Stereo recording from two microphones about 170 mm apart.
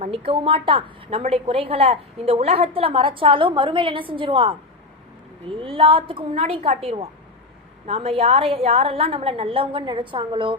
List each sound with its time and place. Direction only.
0.3 s a woman's voice: 30° right (ahead or behind)